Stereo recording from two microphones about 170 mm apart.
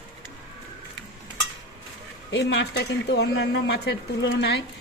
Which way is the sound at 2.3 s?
80° left.